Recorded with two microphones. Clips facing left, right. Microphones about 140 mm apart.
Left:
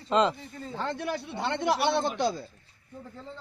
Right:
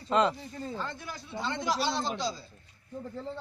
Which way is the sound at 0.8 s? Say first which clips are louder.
Left 7 dB; 70° left (ahead or behind).